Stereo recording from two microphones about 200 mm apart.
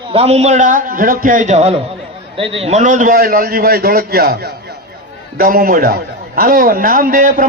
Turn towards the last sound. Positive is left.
turn(degrees=-45)  # may be behind; listen again after turning